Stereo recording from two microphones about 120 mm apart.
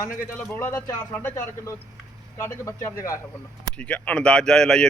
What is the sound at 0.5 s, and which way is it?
Speech, 20° left (ahead or behind).